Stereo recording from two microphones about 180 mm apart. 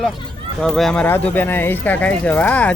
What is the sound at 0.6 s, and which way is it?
Speech, 5° left (ahead or behind).